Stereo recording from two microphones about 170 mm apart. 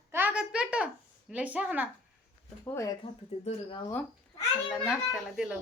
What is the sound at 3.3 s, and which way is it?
Speech, 40° left (ahead or behind).